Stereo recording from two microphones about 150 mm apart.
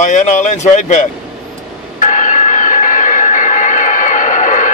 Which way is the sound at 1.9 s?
55° left (ahead or behind).